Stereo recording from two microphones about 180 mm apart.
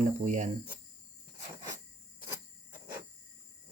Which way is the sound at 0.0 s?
40° right (ahead or behind).